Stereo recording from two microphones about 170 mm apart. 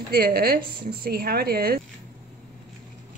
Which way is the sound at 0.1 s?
65° right (ahead or behind).